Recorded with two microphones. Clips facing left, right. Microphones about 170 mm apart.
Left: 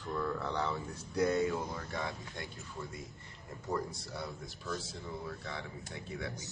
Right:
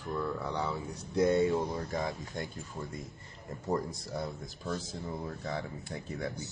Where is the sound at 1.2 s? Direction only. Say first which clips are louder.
Right 4 dB; 25° right (ahead or behind).